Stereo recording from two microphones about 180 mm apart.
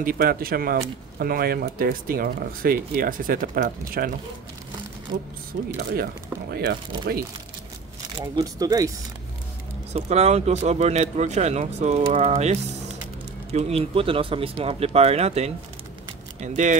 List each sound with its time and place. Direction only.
0.0 s speech: 55° right (ahead or behind)
5.1 s speech: 55° right (ahead or behind)
6.5 s speech: 65° right (ahead or behind)
8.4 s speech: 20° right (ahead or behind)
9.9 s speech: 35° right (ahead or behind)